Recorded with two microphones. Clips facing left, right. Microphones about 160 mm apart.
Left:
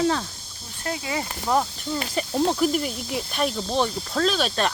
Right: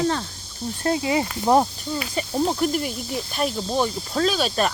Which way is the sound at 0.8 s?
25° right (ahead or behind).